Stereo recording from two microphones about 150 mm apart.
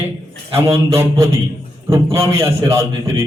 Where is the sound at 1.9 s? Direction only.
20° right (ahead or behind).